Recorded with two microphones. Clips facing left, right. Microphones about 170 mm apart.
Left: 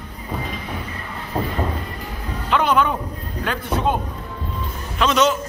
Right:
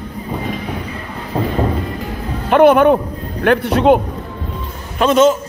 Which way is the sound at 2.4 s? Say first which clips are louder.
Right 10 dB; 55° right (ahead or behind).